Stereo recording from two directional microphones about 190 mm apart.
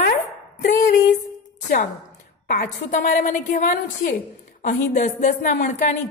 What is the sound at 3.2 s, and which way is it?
A woman's voice, 40° left (ahead or behind).